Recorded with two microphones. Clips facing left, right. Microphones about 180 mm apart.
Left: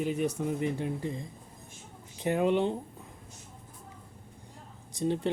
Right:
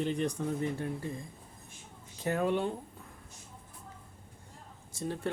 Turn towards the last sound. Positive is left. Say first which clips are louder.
# left 7 dB
turn(degrees=20)  # may be behind; listen again after turning